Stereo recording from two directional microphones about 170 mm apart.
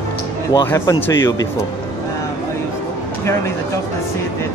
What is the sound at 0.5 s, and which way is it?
Speech, 20° left (ahead or behind).